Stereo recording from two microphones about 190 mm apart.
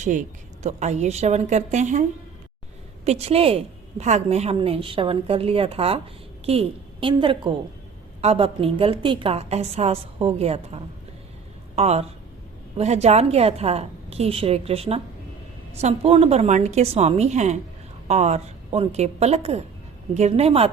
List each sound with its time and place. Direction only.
0.0 s a woman's voice: 40° right (ahead or behind)
11.8 s a woman's voice: 35° right (ahead or behind)